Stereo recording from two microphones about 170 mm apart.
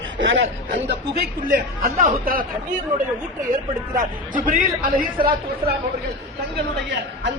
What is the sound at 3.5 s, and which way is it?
Speech, 50° right (ahead or behind).